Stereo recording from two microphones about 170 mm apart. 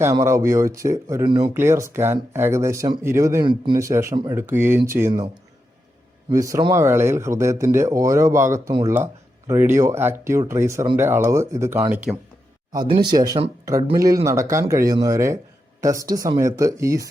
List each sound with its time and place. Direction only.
0.0 s speech: 15° right (ahead or behind)
6.3 s speech: 20° right (ahead or behind)
12.9 s speech: 25° right (ahead or behind)